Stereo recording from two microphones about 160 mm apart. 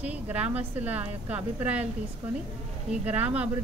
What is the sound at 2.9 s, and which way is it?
Speech, 10° right (ahead or behind).